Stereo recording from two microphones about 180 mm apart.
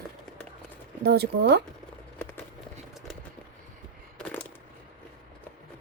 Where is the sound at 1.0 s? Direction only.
65° right (ahead or behind).